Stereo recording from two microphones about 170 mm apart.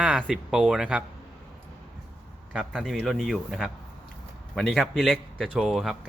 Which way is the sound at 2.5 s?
5° right (ahead or behind).